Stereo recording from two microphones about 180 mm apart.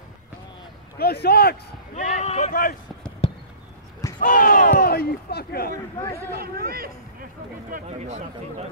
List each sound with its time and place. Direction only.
0.9 s a man's voice: 60° left (ahead or behind)
2.0 s speech: 40° left (ahead or behind)
3.2 s a sound: 35° left (ahead or behind)
4.2 s a sound: 50° left (ahead or behind)
6.3 s speech: 55° right (ahead or behind)
7.7 s speech: 40° right (ahead or behind)